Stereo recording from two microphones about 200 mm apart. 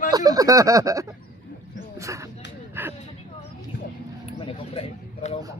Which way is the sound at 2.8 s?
10° right (ahead or behind).